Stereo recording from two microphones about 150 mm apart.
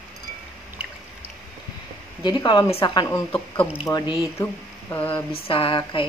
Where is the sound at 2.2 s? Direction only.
30° left (ahead or behind).